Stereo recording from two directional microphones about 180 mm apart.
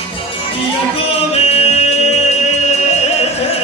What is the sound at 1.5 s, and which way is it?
Music, 35° left (ahead or behind).